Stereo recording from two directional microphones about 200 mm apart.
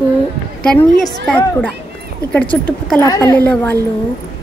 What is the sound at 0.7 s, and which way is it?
A woman's voice, 5° left (ahead or behind).